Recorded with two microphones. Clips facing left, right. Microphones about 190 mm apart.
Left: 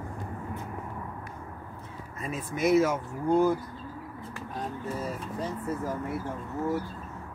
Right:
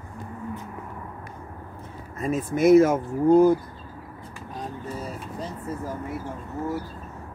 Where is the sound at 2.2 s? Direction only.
45° right (ahead or behind).